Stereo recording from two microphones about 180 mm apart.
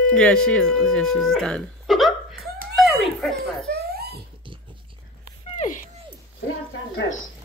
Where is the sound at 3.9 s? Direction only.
60° right (ahead or behind).